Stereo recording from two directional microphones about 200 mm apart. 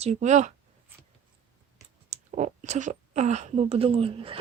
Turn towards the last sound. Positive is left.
turn(degrees=-30)  # may be behind; listen again after turning